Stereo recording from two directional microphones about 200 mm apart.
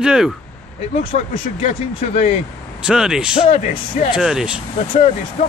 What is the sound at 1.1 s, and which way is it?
Speech, 30° left (ahead or behind).